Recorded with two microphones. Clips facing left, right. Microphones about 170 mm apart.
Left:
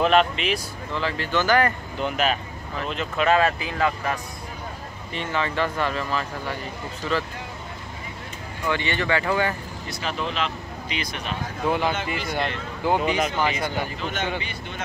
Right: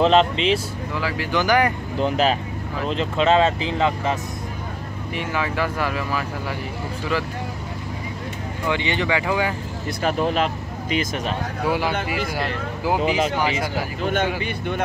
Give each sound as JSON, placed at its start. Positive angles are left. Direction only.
{"t": 0.0, "sound": "speech", "side_deg": -25}
{"t": 0.9, "sound": "speech", "side_deg": -10}
{"t": 2.0, "sound": "speech", "side_deg": -30}
{"t": 5.1, "sound": "speech", "side_deg": -10}
{"t": 8.6, "sound": "speech", "side_deg": -15}
{"t": 9.8, "sound": "speech", "side_deg": -50}
{"t": 11.6, "sound": "speech", "side_deg": -5}
{"t": 11.9, "sound": "speech", "side_deg": -55}
{"t": 12.3, "sound": "speech", "side_deg": -5}